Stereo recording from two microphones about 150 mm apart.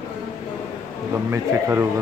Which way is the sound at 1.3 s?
15° right (ahead or behind).